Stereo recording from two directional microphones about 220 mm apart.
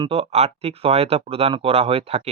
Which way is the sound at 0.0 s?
25° right (ahead or behind).